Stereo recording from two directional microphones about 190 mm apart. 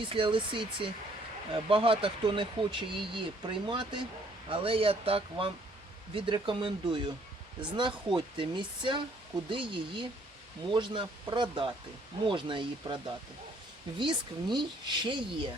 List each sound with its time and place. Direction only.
0.0 s speech: 25° right (ahead or behind)
14.0 s speech: 25° right (ahead or behind)